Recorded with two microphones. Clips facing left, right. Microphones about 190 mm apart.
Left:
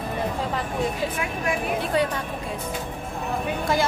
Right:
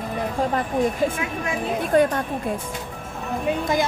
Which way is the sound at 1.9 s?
50° right (ahead or behind).